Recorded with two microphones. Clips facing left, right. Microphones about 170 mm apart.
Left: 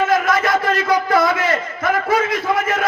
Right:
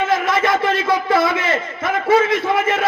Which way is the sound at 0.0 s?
25° right (ahead or behind).